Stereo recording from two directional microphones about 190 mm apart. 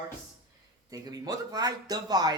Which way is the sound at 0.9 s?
20° right (ahead or behind).